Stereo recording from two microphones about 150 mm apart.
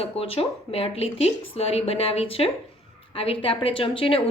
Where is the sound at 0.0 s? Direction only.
40° left (ahead or behind).